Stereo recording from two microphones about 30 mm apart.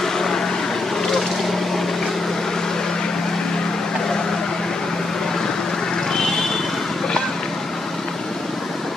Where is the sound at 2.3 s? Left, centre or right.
Centre.